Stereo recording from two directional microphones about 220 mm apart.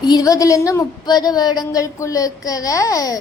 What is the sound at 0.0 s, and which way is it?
A woman's voice, 15° left (ahead or behind).